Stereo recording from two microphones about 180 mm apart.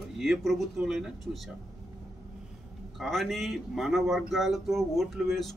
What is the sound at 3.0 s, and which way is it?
Speech, centre (ahead or behind).